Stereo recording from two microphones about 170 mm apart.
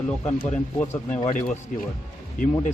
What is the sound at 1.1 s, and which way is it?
Speech, 45° left (ahead or behind).